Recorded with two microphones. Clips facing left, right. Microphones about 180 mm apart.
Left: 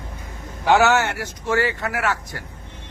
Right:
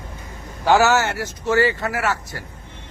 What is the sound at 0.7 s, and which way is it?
A man's voice, centre (ahead or behind).